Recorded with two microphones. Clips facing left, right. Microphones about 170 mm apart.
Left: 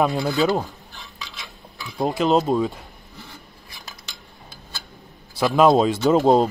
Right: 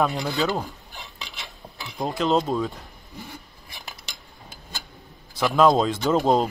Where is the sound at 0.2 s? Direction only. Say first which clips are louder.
Left 5 dB; 10° left (ahead or behind).